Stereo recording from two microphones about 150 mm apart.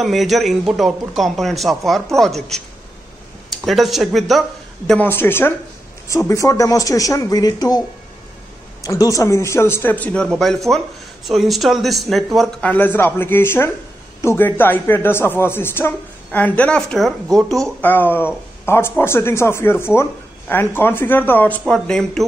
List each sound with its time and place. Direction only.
0.0 s a man's voice: centre (ahead or behind)
3.4 s speech: centre (ahead or behind); by 7.8 s 25° left (ahead or behind)
8.8 s a man's voice: 25° left (ahead or behind); by 17.7 s centre (ahead or behind)
17.8 s speech: 15° left (ahead or behind)